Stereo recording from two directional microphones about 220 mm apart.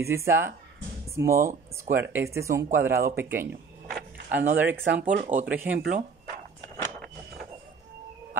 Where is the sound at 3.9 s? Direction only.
45° right (ahead or behind).